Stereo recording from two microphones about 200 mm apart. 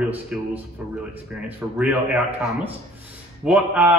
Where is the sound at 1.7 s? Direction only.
5° right (ahead or behind).